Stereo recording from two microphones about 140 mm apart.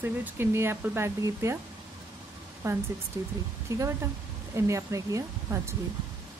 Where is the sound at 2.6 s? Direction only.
20° right (ahead or behind).